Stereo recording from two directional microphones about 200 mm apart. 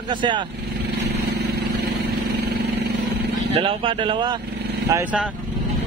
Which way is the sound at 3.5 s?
25° right (ahead or behind).